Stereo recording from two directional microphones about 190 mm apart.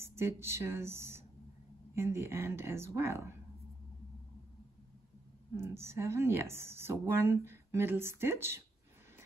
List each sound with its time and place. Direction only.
0.0 s speech: 15° right (ahead or behind)
5.6 s speech: 15° right (ahead or behind)